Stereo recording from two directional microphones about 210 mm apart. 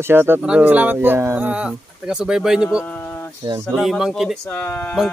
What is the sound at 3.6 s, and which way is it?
Speech, 5° left (ahead or behind).